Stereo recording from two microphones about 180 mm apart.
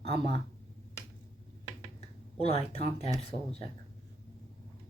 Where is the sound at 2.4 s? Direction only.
35° left (ahead or behind).